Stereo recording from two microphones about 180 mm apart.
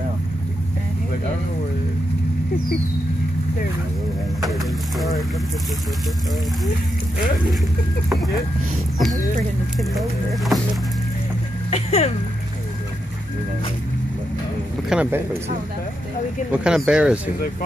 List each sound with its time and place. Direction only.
4.5 s speech: centre (ahead or behind)
9.8 s speech: centre (ahead or behind)
11.7 s speech: 35° left (ahead or behind)
14.9 s speech: 10° right (ahead or behind)
16.5 s speech: 5° right (ahead or behind)